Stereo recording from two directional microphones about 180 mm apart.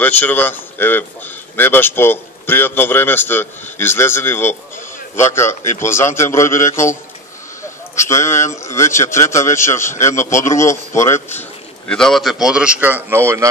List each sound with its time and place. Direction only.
0.0 s speech: 10° left (ahead or behind)
11.9 s a man's voice: centre (ahead or behind); by 13.5 s 15° right (ahead or behind)